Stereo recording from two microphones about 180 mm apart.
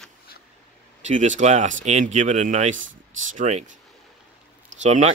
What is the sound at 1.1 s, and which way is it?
Speech, 40° right (ahead or behind).